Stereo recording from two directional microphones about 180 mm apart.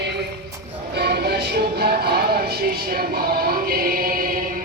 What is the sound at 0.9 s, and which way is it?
Music, 65° right (ahead or behind).